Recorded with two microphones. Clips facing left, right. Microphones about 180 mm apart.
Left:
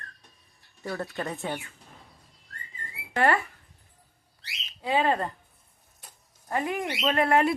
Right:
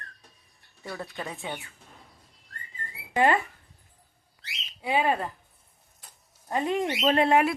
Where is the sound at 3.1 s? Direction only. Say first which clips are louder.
Right 1 dB; 15° right (ahead or behind).